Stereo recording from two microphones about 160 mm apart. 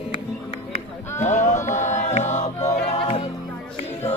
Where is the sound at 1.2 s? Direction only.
50° left (ahead or behind).